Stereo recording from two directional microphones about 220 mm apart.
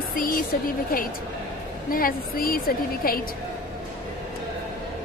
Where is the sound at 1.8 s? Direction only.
40° left (ahead or behind).